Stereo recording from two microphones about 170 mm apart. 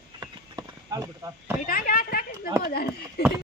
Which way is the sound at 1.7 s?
55° left (ahead or behind).